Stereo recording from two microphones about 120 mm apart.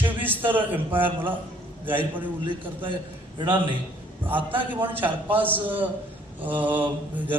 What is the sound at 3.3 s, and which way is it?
Speech, 40° right (ahead or behind).